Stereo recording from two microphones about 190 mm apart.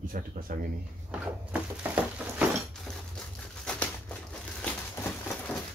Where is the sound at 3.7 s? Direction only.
5° left (ahead or behind).